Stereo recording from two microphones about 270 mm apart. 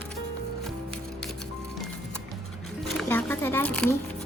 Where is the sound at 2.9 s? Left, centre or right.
Centre.